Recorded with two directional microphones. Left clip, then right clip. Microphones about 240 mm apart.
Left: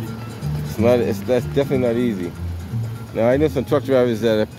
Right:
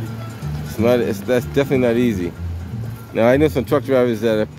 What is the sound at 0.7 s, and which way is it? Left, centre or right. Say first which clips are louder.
Speech: even; centre.